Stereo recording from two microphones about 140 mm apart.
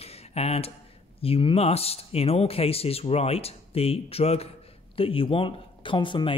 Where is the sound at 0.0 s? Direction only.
50° left (ahead or behind).